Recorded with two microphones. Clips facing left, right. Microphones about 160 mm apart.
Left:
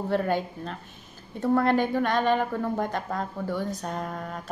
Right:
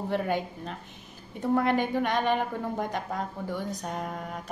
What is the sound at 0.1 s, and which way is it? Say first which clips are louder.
A woman's voice: left 3 dB; 15° right (ahead or behind).